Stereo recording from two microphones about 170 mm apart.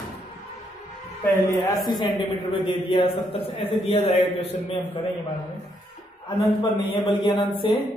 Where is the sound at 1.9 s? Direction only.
25° left (ahead or behind).